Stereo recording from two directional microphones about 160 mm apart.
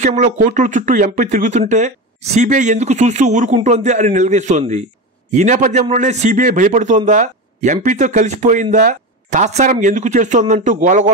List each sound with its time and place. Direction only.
0.0 s speech: 50° right (ahead or behind)